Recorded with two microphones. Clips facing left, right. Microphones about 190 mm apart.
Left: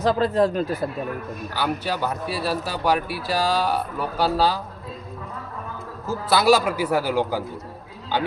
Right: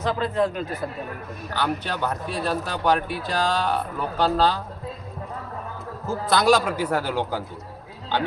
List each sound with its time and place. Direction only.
0.0 s speech: 35° left (ahead or behind)
1.5 s speech: 10° left (ahead or behind)
6.1 s speech: 5° left (ahead or behind)